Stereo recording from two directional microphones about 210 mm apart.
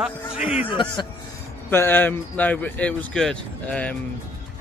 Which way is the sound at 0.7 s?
25° left (ahead or behind).